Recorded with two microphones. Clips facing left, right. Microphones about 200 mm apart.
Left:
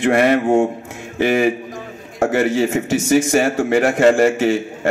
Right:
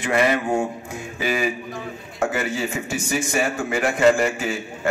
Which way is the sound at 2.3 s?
90° left.